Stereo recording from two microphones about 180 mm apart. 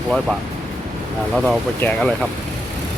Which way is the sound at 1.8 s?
10° left (ahead or behind).